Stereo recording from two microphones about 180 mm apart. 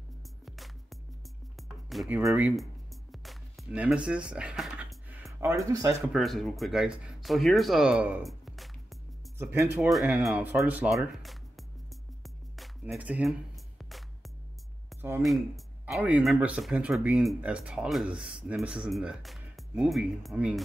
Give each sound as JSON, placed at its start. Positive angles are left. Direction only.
{"t": 0.5, "sound": "music", "side_deg": 0}
{"t": 5.4, "sound": "speech", "side_deg": -15}
{"t": 6.1, "sound": "speech", "side_deg": 0}
{"t": 9.4, "sound": "speech", "side_deg": -15}
{"t": 9.8, "sound": "speech", "side_deg": 0}
{"t": 12.2, "sound": "music", "side_deg": 0}
{"t": 15.0, "sound": "speech", "side_deg": -10}
{"t": 15.2, "sound": "speech", "side_deg": 0}